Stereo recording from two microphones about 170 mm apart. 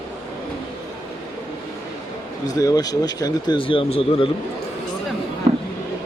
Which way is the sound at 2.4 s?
20° left (ahead or behind).